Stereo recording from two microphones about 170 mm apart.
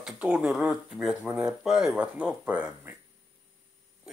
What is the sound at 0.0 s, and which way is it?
Speech, 5° right (ahead or behind).